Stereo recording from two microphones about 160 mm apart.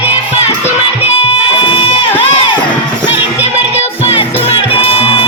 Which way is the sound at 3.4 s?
40° left (ahead or behind).